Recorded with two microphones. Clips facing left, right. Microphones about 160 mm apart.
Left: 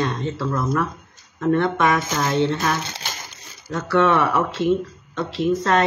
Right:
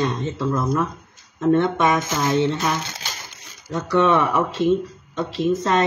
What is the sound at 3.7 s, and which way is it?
Speech, 15° right (ahead or behind).